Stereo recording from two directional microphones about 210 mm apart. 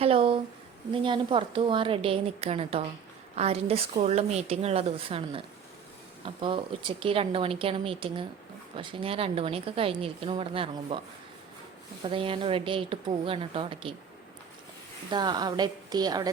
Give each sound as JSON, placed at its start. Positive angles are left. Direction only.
{"t": 0.0, "sound": "a woman's voice", "side_deg": -25}
{"t": 12.0, "sound": "a woman's voice", "side_deg": -25}
{"t": 15.1, "sound": "a woman's voice", "side_deg": -20}